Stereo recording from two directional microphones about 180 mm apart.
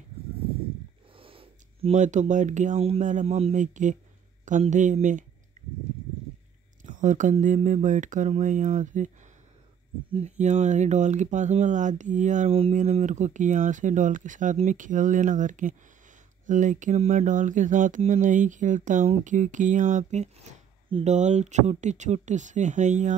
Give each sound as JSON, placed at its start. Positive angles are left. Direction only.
{"t": 1.1, "sound": "speech", "side_deg": -30}
{"t": 6.8, "sound": "speech", "side_deg": -45}
{"t": 10.1, "sound": "speech", "side_deg": -40}